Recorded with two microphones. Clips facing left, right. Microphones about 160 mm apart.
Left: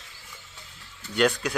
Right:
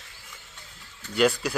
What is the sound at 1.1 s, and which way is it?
Speech, 5° right (ahead or behind).